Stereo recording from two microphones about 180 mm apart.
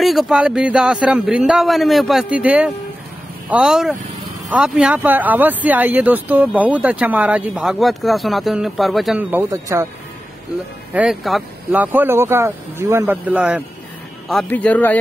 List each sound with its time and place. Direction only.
0.0 s speech: centre (ahead or behind); by 9.8 s 15° right (ahead or behind)
10.9 s speech: 5° right (ahead or behind)
14.3 s a man's voice: 10° left (ahead or behind)